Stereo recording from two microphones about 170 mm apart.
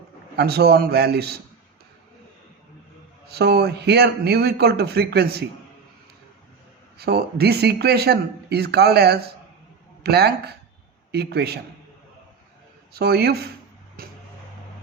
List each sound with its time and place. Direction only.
0.3 s speech: 70° right (ahead or behind)
3.2 s speech: 70° right (ahead or behind)
7.0 s speech: 70° right (ahead or behind)
12.9 s speech: 70° right (ahead or behind)
14.0 s a sound: 60° right (ahead or behind)